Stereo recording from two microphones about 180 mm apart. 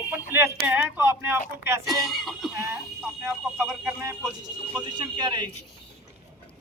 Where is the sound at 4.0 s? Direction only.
15° right (ahead or behind).